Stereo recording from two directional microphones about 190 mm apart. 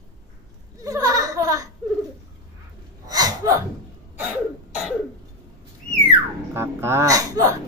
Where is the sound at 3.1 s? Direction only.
20° right (ahead or behind).